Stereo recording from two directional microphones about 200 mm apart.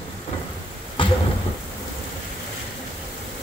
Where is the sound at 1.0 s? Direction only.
25° left (ahead or behind).